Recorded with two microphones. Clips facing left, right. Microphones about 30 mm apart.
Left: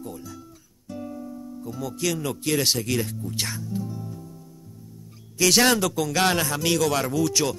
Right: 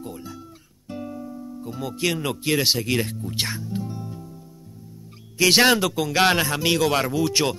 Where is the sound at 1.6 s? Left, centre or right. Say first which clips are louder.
Right 2 dB; right.